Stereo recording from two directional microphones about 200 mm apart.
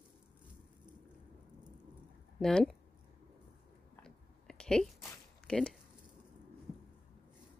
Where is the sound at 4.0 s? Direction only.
5° left (ahead or behind).